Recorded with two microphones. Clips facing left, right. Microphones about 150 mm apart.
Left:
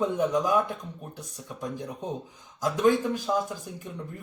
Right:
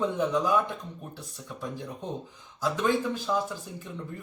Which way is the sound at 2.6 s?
15° left (ahead or behind).